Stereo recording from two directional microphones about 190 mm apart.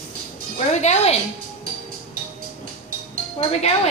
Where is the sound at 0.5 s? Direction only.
35° left (ahead or behind).